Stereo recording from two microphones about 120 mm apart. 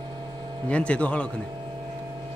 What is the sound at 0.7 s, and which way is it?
Speech, 10° left (ahead or behind).